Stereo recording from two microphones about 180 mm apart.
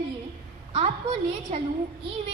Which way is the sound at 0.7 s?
35° right (ahead or behind).